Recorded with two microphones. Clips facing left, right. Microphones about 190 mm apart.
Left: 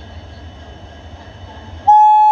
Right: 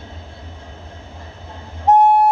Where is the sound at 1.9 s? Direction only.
25° left (ahead or behind).